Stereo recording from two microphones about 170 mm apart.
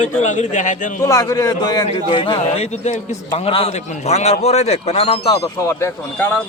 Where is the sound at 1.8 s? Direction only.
35° left (ahead or behind).